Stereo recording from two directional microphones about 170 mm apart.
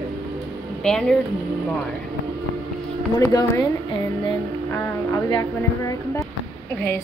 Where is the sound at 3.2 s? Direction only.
20° left (ahead or behind).